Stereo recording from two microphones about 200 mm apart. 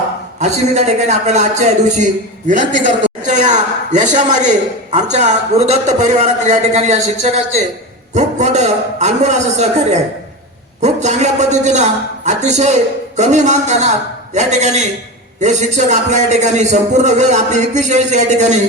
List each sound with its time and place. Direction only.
0.3 s a man's voice: 35° right (ahead or behind)